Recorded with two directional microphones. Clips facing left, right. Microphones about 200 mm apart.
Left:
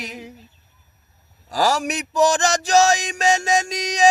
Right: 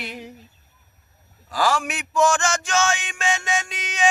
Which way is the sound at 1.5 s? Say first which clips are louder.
Left 2 dB; 40° left (ahead or behind).